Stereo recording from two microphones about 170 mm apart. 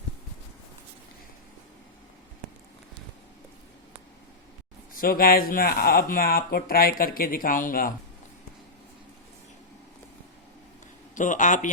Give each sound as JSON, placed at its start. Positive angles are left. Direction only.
{"t": 4.9, "sound": "speech", "side_deg": 60}
{"t": 11.1, "sound": "a man's voice", "side_deg": 45}